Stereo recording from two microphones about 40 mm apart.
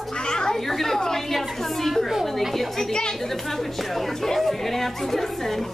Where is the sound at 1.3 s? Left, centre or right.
Centre.